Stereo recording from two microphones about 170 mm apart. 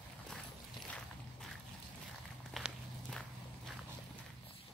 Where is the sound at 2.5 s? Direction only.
Centre (ahead or behind).